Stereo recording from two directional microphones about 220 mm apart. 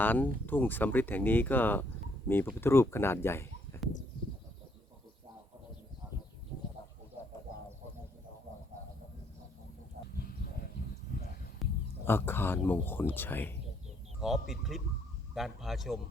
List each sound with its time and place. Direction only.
0.0 s speech: 10° left (ahead or behind)
11.1 s a sound: 45° left (ahead or behind)
11.6 s speech: 10° left (ahead or behind)
14.2 s speech: centre (ahead or behind)